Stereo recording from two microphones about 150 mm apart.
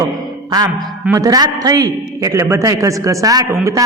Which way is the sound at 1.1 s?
25° right (ahead or behind).